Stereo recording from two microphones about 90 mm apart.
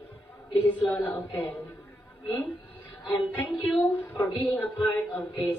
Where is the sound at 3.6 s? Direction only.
20° left (ahead or behind).